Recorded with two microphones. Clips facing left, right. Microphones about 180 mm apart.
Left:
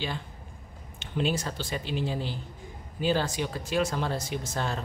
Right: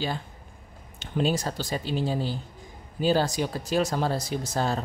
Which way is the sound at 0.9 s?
40° right (ahead or behind).